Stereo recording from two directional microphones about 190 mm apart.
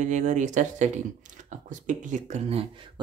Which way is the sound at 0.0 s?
40° right (ahead or behind).